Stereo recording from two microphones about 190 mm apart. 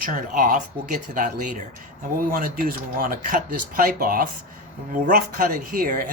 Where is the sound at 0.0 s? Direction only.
45° right (ahead or behind).